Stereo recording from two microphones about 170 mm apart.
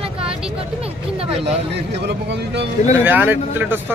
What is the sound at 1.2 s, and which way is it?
Speech, 35° right (ahead or behind).